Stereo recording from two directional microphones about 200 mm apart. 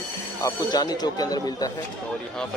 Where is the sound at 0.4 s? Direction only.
15° left (ahead or behind).